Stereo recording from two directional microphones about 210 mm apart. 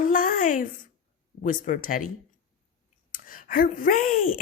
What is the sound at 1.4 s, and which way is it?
Speech, 40° left (ahead or behind).